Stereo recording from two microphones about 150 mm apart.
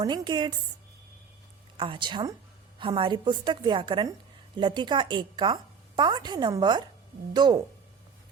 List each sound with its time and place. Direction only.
0.0 s a woman's voice: 30° right (ahead or behind)
1.7 s a woman's voice: 35° right (ahead or behind)